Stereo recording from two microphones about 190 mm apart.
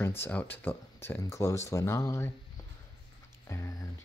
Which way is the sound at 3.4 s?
15° left (ahead or behind).